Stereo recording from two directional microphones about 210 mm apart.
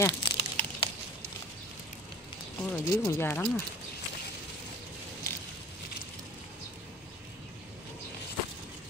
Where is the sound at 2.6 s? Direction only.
10° left (ahead or behind).